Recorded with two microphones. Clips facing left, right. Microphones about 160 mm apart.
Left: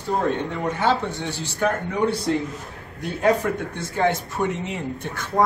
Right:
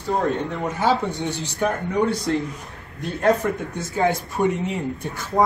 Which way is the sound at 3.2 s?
Centre (ahead or behind).